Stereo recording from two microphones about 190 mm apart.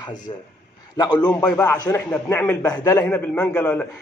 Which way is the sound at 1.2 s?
5° left (ahead or behind).